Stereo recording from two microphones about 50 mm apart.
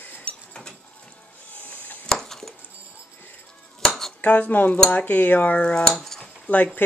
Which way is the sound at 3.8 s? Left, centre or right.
Centre.